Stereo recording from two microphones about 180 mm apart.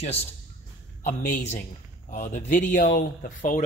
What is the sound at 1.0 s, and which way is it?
Speech, 50° left (ahead or behind).